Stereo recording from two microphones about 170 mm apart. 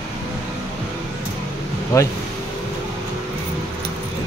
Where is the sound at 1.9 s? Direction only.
20° left (ahead or behind).